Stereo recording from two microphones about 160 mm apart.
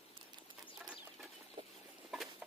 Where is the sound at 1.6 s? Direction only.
35° right (ahead or behind).